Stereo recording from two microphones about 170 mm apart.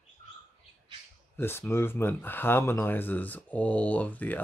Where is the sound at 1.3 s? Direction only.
15° left (ahead or behind).